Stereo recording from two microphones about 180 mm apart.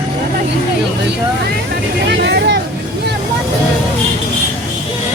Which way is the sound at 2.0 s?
70° right (ahead or behind).